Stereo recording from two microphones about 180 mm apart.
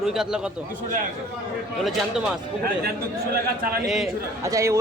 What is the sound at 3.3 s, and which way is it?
Speech, 60° right (ahead or behind).